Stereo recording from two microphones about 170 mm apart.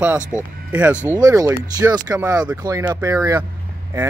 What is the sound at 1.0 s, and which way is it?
Speech, 20° right (ahead or behind).